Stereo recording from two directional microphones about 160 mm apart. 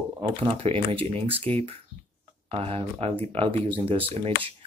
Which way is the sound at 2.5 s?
40° right (ahead or behind).